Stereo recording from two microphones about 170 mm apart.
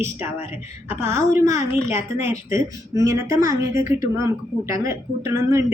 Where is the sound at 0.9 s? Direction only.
15° right (ahead or behind).